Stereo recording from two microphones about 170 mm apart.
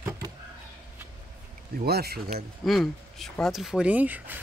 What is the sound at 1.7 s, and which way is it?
Speech, 70° right (ahead or behind).